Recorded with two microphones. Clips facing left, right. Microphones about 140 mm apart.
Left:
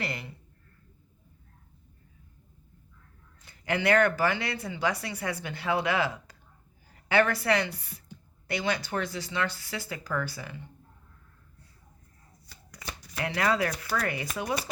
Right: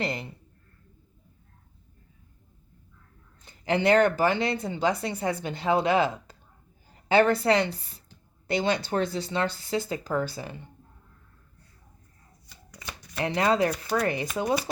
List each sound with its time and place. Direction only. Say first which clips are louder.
0.0 s speech: right 5 dB; 25° right (ahead or behind)
3.4 s a woman's voice: right 4 dB; 25° right (ahead or behind)
13.1 s speech: right 4 dB; 25° right (ahead or behind)